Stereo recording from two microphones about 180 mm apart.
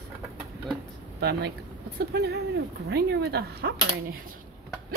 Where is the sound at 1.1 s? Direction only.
65° right (ahead or behind).